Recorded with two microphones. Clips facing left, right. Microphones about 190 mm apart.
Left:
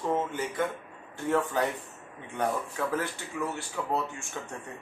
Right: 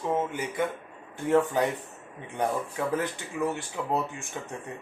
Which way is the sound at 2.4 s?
15° right (ahead or behind).